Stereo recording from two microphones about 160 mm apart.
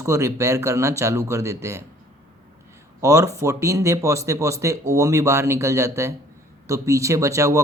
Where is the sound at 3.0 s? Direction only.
20° right (ahead or behind).